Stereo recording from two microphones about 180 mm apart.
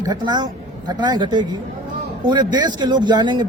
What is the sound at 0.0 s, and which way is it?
Speech, 20° right (ahead or behind).